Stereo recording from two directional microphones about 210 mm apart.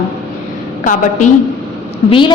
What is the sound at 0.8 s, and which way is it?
Speech, 40° left (ahead or behind).